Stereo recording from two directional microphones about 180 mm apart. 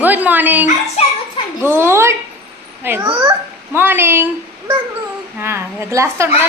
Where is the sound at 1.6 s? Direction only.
15° right (ahead or behind).